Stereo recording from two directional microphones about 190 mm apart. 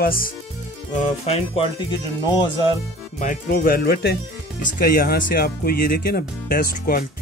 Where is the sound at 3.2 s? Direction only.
45° left (ahead or behind).